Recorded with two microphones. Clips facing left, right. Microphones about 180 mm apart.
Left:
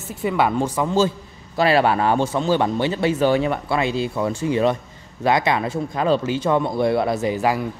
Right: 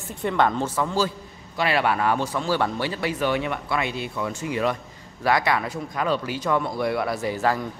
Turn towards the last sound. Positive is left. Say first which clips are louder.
# left 3 dB
turn(degrees=15)  # may be behind; listen again after turning